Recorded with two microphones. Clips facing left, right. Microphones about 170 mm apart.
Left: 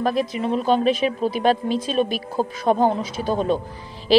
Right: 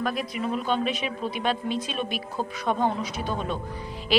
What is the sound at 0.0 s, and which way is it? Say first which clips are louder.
A woman's voice: left 6 dB; 30° left (ahead or behind).